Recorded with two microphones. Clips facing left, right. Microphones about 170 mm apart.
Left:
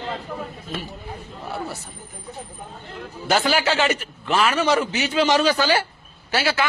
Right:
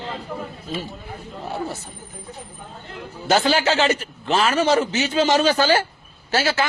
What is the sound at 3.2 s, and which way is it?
A man's voice, 25° right (ahead or behind).